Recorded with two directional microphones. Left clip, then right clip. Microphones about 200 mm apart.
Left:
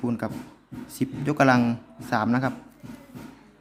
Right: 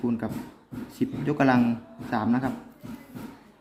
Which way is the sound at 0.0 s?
30° left (ahead or behind).